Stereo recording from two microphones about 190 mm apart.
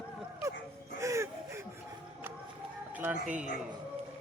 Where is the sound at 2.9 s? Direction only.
10° right (ahead or behind).